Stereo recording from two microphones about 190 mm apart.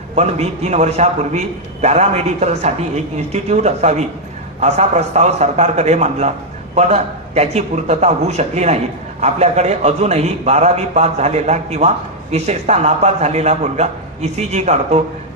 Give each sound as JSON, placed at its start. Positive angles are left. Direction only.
{"t": 0.2, "sound": "a man's voice", "side_deg": -35}